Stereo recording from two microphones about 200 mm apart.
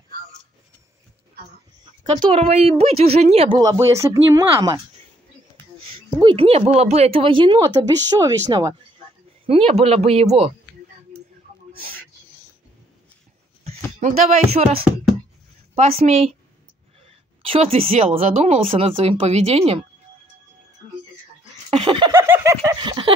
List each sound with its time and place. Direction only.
2.0 s speech: 25° right (ahead or behind)
3.5 s speech: 15° right (ahead or behind)
6.2 s speech: 30° right (ahead or behind)
13.9 s speech: 35° right (ahead or behind)
15.7 s speech: 30° right (ahead or behind)
17.4 s speech: 30° right (ahead or behind)
21.6 s a sound: 25° right (ahead or behind)